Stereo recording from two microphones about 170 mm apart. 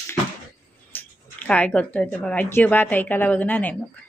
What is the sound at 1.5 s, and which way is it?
A woman's voice, 5° left (ahead or behind).